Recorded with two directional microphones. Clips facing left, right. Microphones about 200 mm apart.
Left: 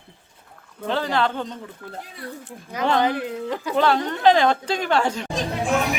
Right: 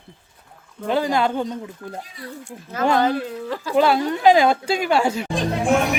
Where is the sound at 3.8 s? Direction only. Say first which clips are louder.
Right 3 dB; 10° right (ahead or behind).